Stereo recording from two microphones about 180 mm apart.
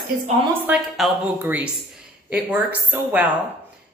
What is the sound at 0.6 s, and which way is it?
A woman's voice, 10° right (ahead or behind).